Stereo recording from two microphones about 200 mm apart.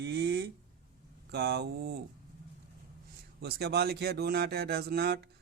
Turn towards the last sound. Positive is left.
turn(degrees=-55)  # may be behind; listen again after turning